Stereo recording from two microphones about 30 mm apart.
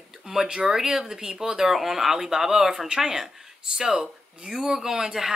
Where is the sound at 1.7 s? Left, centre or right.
Centre.